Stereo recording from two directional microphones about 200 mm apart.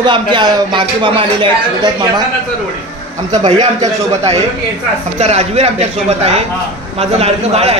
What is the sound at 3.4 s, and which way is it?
A man's voice, 35° right (ahead or behind).